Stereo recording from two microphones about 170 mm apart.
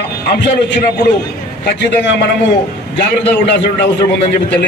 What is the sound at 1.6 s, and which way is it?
Speech, 80° left.